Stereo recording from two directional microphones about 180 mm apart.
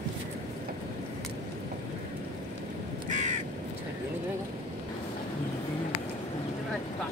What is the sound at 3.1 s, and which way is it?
Crow, 45° right (ahead or behind).